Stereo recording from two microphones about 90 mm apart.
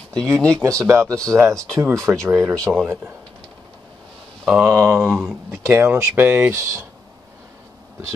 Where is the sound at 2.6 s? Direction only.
5° left (ahead or behind).